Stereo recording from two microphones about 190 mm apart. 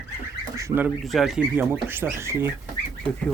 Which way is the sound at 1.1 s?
Centre (ahead or behind).